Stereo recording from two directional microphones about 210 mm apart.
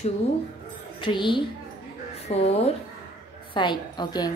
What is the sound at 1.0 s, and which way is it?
Speech, 20° left (ahead or behind).